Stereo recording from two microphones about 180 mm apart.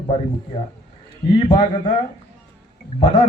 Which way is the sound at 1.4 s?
30° left (ahead or behind).